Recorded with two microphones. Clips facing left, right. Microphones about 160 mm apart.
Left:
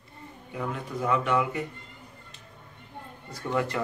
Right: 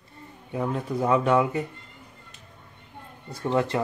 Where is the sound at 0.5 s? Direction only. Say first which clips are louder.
Right 5 dB; 35° right (ahead or behind).